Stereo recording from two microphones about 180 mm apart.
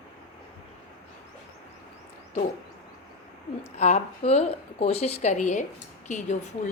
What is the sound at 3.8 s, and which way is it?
A woman's voice, 35° left (ahead or behind).